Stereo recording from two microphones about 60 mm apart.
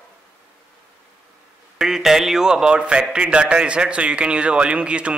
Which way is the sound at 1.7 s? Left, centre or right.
Centre.